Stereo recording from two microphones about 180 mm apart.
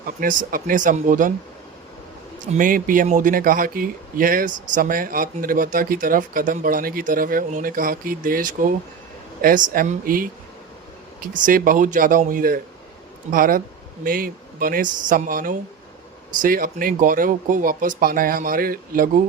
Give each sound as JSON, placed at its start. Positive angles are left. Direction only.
{"t": 0.0, "sound": "speech", "side_deg": -50}
{"t": 2.4, "sound": "speech", "side_deg": -45}